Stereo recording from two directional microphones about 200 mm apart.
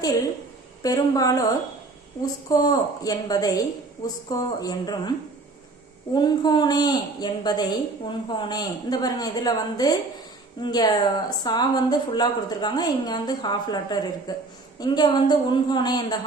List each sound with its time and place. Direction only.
0.8 s speech: 20° left (ahead or behind)
6.1 s speech: 20° left (ahead or behind)